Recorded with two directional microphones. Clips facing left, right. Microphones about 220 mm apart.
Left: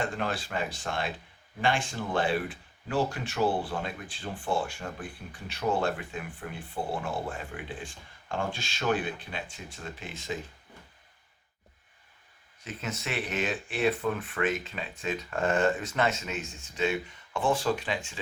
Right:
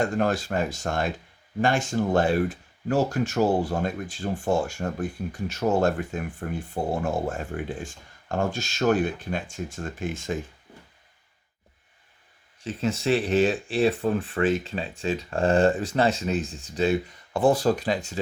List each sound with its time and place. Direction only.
0.0 s speech: 45° right (ahead or behind)
12.6 s speech: 30° right (ahead or behind)